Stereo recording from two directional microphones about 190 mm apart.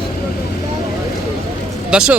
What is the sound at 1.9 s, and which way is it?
Speech, 5° right (ahead or behind).